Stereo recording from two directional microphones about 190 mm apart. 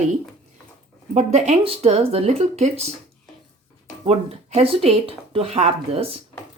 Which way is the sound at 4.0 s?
30° right (ahead or behind).